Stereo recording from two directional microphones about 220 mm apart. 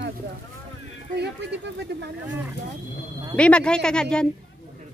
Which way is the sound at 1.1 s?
50° right (ahead or behind).